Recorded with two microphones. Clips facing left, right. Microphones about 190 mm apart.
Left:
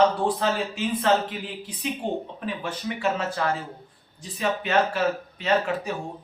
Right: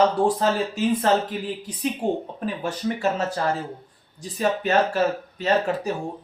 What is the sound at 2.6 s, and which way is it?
Speech, 40° right (ahead or behind).